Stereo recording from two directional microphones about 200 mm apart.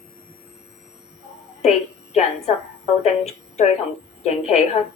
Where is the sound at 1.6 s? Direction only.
35° left (ahead or behind).